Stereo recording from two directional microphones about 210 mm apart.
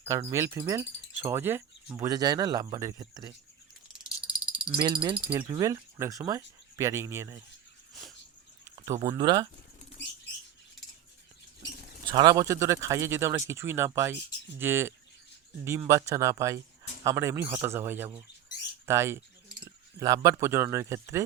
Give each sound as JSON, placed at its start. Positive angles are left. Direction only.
{"t": 0.0, "sound": "wind chime", "side_deg": -15}
{"t": 3.9, "sound": "frog", "side_deg": -5}
{"t": 5.1, "sound": "wind chime", "side_deg": -5}
{"t": 5.4, "sound": "wind chime", "side_deg": -20}
{"t": 8.7, "sound": "speech", "side_deg": -20}
{"t": 12.1, "sound": "wind chime", "side_deg": -20}
{"t": 18.9, "sound": "speech", "side_deg": -10}